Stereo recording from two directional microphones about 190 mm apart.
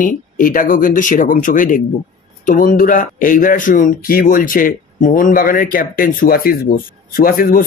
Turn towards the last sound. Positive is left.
turn(degrees=50)  # may be behind; listen again after turning